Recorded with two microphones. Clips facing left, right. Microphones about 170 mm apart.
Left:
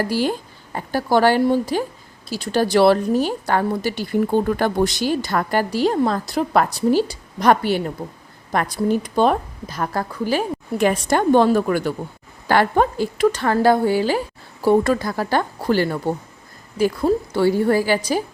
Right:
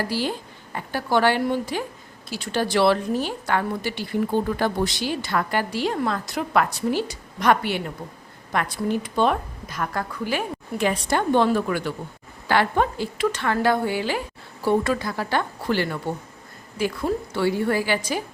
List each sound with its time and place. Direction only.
0.1 s a woman's voice: 45° left (ahead or behind)
4.4 s a woman's voice: 55° left (ahead or behind); by 10.8 s 35° left (ahead or behind)
10.8 s a woman's voice: 45° left (ahead or behind)